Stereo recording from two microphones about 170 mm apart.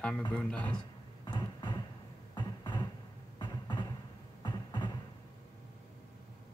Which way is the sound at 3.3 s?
25° left (ahead or behind).